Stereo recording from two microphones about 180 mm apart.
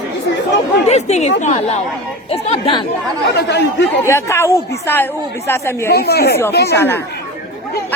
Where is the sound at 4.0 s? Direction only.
15° left (ahead or behind).